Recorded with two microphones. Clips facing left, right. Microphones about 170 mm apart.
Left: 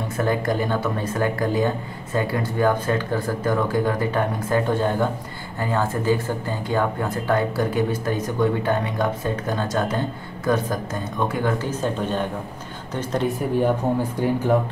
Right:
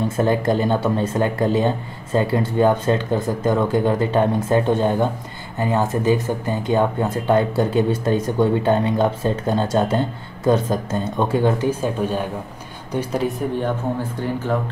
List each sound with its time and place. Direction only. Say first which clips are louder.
0.2 s speech: right 3 dB; 25° right (ahead or behind)
11.5 s speech: right 3 dB; 15° right (ahead or behind)
14.2 s speech: left 3 dB; 15° left (ahead or behind)